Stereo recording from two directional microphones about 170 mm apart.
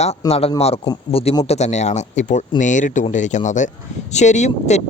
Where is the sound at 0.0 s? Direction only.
35° left (ahead or behind).